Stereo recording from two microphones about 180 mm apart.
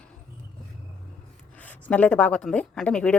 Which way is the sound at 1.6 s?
10° left (ahead or behind).